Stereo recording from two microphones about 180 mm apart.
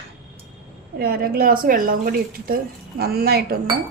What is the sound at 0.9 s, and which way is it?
Speech, 55° right (ahead or behind).